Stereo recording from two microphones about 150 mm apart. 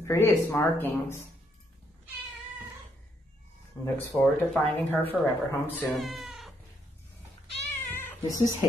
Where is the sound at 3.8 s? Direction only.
5° left (ahead or behind).